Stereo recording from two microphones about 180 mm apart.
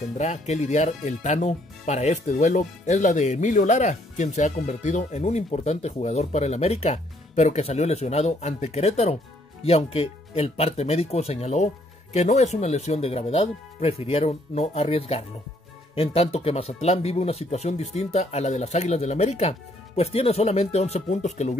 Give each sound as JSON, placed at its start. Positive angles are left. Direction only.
{"t": 0.2, "sound": "speech", "side_deg": 40}